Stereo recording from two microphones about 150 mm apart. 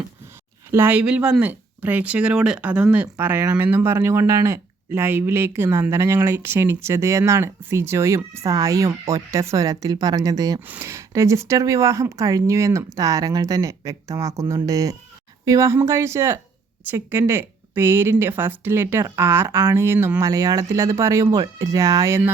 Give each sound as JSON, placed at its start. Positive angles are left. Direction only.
{"t": 0.7, "sound": "speech", "side_deg": -15}